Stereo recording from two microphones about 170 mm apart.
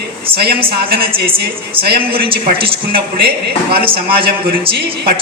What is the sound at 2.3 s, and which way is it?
Speech, 30° right (ahead or behind).